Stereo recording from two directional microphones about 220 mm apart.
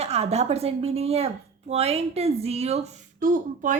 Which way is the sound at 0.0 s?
30° right (ahead or behind).